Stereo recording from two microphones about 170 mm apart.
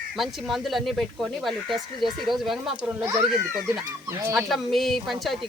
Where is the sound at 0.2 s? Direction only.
Centre (ahead or behind).